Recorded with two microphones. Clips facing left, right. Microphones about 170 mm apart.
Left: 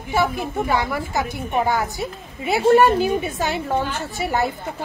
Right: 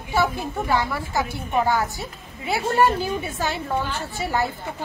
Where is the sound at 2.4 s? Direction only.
15° left (ahead or behind).